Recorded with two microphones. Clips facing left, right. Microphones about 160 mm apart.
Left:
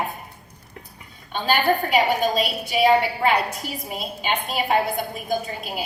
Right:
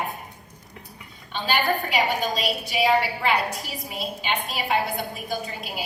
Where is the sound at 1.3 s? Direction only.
50° left (ahead or behind).